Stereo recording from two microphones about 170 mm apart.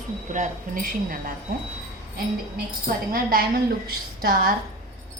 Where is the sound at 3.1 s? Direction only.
60° right (ahead or behind).